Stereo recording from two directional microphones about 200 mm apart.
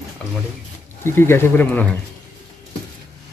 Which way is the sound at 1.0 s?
10° left (ahead or behind).